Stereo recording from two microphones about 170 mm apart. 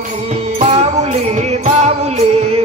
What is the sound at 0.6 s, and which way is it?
Music, 40° right (ahead or behind).